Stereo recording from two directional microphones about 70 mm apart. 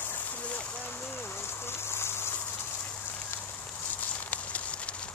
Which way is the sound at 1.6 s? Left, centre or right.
Left.